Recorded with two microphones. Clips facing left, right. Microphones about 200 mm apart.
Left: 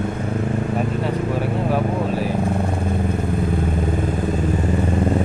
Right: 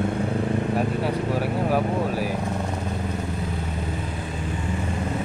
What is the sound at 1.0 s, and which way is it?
Vehicle, 10° right (ahead or behind).